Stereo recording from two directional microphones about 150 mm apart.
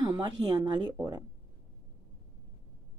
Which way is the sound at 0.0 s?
25° right (ahead or behind).